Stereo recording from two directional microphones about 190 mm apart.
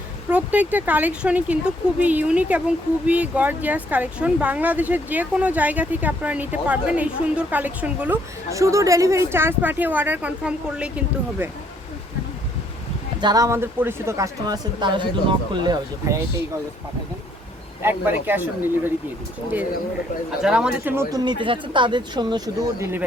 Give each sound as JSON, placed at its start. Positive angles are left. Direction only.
{"t": 0.3, "sound": "speech", "side_deg": -10}
{"t": 13.2, "sound": "speech", "side_deg": -20}
{"t": 17.8, "sound": "speech", "side_deg": -10}
{"t": 20.4, "sound": "speech", "side_deg": -5}
{"t": 21.2, "sound": "speech", "side_deg": -25}